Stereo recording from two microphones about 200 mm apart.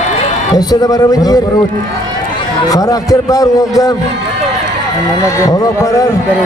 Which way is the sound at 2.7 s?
20° left (ahead or behind).